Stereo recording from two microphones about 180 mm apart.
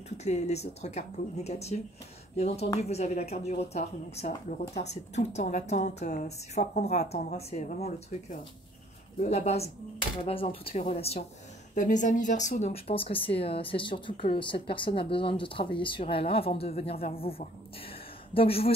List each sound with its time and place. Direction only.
0.2 s a woman's voice: 40° left (ahead or behind)
11.7 s speech: 45° left (ahead or behind)